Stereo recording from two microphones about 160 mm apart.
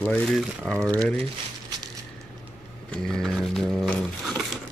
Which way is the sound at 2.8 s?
5° left (ahead or behind).